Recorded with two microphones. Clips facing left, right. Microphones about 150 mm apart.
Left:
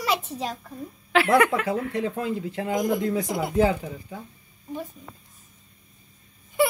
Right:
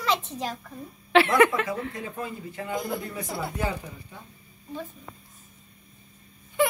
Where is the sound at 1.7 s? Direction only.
75° left (ahead or behind).